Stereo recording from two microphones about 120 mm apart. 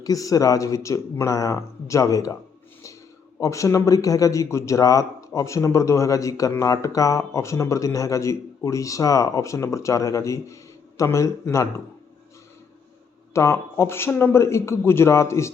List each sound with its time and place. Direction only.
0.0 s a man's voice: 30° left (ahead or behind)
3.4 s a man's voice: 25° left (ahead or behind)
13.3 s a man's voice: 25° left (ahead or behind)